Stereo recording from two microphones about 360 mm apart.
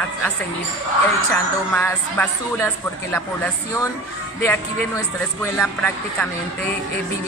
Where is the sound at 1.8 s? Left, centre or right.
Centre.